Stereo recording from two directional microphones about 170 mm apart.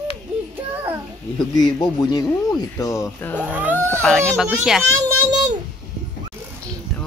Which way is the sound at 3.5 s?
10° right (ahead or behind).